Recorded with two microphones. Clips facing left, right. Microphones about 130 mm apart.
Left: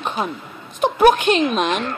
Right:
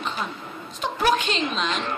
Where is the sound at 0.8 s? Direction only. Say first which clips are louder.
Left 9 dB; 55° left (ahead or behind).